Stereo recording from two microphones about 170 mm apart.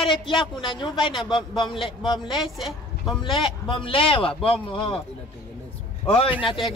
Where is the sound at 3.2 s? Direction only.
30° left (ahead or behind).